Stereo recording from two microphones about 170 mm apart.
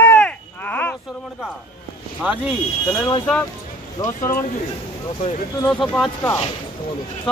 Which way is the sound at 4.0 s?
20° left (ahead or behind).